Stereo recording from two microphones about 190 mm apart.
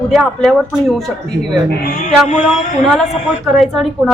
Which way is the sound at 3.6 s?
Centre (ahead or behind).